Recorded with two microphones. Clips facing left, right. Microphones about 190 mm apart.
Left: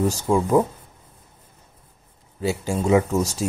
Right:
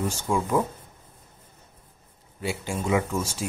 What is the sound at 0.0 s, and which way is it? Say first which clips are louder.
Speech: left 6 dB; 40° left (ahead or behind).